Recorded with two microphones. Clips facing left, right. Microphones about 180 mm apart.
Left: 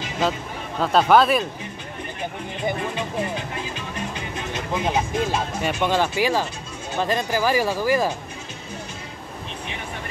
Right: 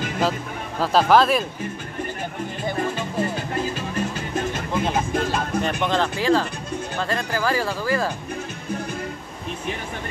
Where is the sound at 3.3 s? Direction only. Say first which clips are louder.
Right 4 dB; 40° right (ahead or behind).